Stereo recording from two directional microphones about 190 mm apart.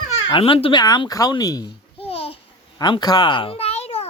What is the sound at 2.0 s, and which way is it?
Babbling, 30° left (ahead or behind).